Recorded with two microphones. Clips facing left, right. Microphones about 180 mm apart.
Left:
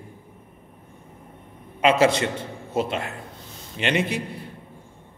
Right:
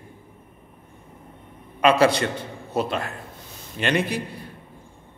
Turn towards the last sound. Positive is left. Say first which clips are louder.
# even
turn(degrees=25)  # may be behind; listen again after turning